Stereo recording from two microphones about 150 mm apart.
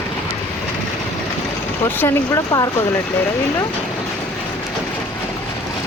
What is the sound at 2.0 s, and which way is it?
Speech, 25° left (ahead or behind).